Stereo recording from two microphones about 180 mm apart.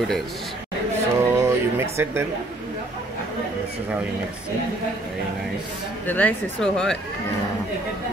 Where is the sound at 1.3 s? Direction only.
15° right (ahead or behind).